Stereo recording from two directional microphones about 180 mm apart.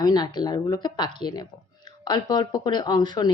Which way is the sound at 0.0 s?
20° left (ahead or behind).